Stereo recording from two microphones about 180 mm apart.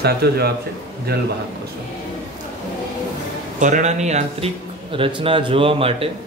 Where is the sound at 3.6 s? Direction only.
40° right (ahead or behind).